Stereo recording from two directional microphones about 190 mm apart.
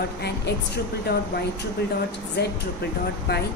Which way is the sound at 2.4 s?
60° left (ahead or behind).